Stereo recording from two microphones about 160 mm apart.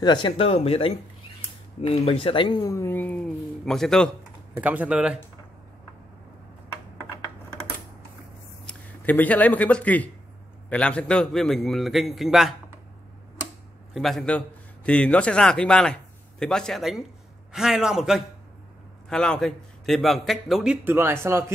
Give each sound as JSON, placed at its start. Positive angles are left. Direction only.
{"t": 0.0, "sound": "speech", "side_deg": 30}
{"t": 2.7, "sound": "a man's voice", "side_deg": 15}
{"t": 4.6, "sound": "speech", "side_deg": -10}
{"t": 8.6, "sound": "a man's voice", "side_deg": 10}
{"t": 13.9, "sound": "a man's voice", "side_deg": 0}